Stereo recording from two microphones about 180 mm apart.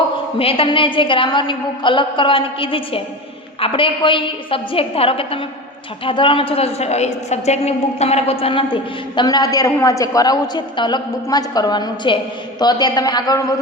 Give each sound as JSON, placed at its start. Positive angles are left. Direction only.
{"t": 0.3, "sound": "a woman's voice", "side_deg": 30}